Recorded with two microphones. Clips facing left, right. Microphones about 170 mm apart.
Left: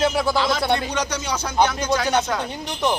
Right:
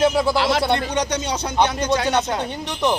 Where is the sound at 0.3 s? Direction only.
75° right (ahead or behind).